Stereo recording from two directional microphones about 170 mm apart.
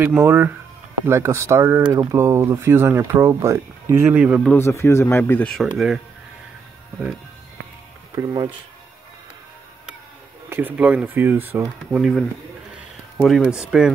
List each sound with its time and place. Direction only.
0.0 s speech: 10° right (ahead or behind)
4.5 s speech: 15° left (ahead or behind)
8.2 s speech: 20° right (ahead or behind)
10.5 s speech: 10° right (ahead or behind)
12.0 s speech: centre (ahead or behind)